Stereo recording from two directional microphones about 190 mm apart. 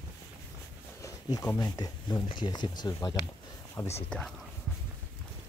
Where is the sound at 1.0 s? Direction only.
20° left (ahead or behind).